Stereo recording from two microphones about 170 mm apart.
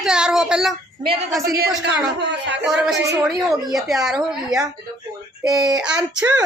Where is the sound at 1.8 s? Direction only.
90° right.